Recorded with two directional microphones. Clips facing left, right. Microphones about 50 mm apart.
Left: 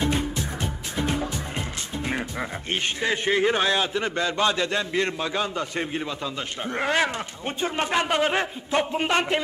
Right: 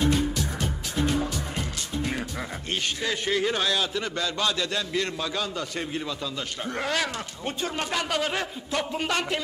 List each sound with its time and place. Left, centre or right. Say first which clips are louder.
2.0 s speech: left 2 dB; left